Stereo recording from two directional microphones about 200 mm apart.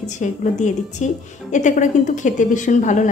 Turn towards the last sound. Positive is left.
turn(degrees=40)  # may be behind; listen again after turning